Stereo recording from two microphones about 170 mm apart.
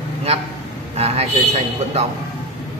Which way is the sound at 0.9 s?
35° right (ahead or behind).